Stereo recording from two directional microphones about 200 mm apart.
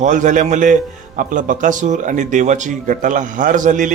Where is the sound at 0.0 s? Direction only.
40° right (ahead or behind).